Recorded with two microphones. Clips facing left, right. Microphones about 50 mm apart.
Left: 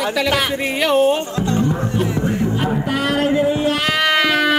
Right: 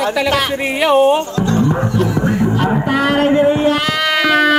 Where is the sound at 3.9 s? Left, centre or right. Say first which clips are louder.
Even; centre.